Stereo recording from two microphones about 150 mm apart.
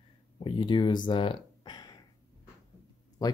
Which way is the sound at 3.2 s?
25° left (ahead or behind).